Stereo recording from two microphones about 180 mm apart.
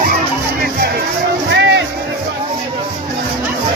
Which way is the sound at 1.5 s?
85° right.